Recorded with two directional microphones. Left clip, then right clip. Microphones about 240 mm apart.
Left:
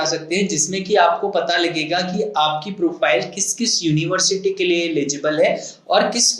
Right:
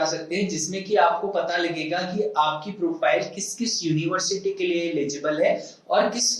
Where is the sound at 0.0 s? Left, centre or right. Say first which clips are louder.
Left 5 dB; left.